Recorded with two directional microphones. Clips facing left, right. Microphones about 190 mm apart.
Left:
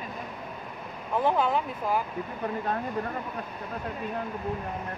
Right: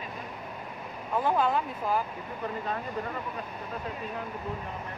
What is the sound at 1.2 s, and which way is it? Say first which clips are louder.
Speech: left 1 dB; 20° left (ahead or behind).